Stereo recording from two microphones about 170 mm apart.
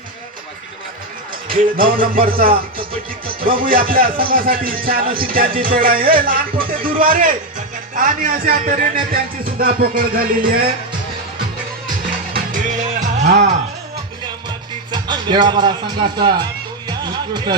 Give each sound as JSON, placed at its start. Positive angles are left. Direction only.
{"t": 1.5, "sound": "a man's voice", "side_deg": -55}
{"t": 2.5, "sound": "music", "side_deg": -30}
{"t": 3.7, "sound": "a man's voice", "side_deg": -60}
{"t": 12.3, "sound": "music", "side_deg": -50}
{"t": 14.9, "sound": "speech", "side_deg": -25}
{"t": 17.0, "sound": "music", "side_deg": -25}